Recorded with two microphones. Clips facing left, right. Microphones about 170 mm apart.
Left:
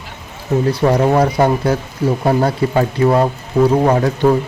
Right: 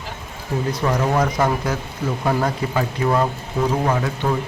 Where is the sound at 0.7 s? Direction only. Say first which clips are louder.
Left 6 dB; 30° left (ahead or behind).